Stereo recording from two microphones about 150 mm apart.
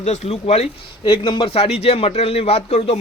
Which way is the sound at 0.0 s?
45° left (ahead or behind).